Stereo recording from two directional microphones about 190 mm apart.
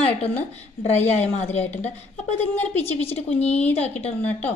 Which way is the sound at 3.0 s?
35° left (ahead or behind).